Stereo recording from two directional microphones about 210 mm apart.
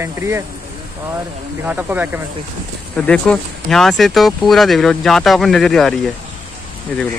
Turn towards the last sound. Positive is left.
turn(degrees=5)  # may be behind; listen again after turning